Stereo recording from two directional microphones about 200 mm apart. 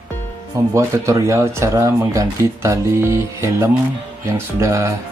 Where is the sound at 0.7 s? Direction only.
15° right (ahead or behind).